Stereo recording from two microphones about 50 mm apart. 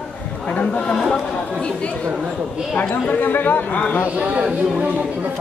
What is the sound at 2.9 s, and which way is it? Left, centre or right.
Speech, left.